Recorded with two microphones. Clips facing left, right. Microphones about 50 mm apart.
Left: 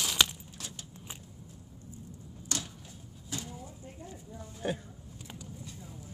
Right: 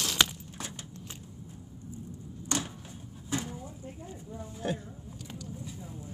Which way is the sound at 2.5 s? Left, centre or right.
Right.